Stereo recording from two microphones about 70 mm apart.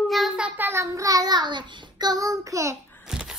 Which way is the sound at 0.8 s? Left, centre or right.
Right.